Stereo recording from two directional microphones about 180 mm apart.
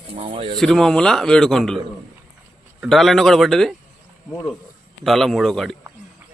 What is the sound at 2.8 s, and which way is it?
Speech, centre (ahead or behind).